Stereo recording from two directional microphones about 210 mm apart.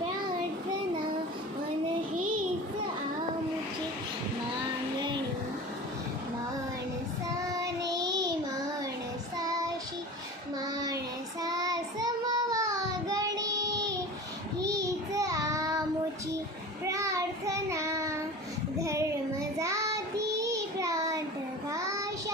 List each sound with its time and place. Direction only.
7.9 s child singing: 20° right (ahead or behind)
9.4 s child singing: 15° right (ahead or behind)
10.8 s child singing: 15° right (ahead or behind)
16.8 s child singing: 15° right (ahead or behind)